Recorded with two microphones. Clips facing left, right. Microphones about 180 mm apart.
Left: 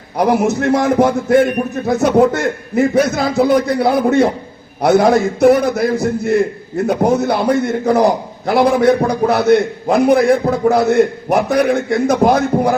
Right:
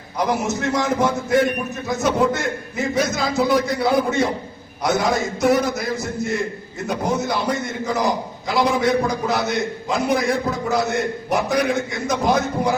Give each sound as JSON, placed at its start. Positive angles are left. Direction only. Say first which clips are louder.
{"t": 0.2, "sound": "a man's voice", "louder": "left 8 dB", "side_deg": 60}